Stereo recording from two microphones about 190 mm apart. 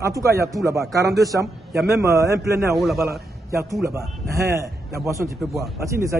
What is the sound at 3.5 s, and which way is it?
Speech, 15° right (ahead or behind).